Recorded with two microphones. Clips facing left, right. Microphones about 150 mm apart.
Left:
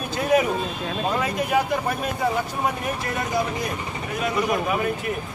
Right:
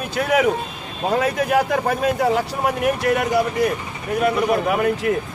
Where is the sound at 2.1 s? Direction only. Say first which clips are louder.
Right 5 dB; 75° right (ahead or behind).